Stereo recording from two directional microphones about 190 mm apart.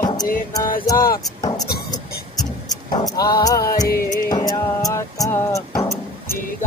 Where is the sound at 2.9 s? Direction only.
20° left (ahead or behind).